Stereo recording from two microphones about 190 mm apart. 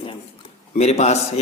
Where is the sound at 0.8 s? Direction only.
35° left (ahead or behind).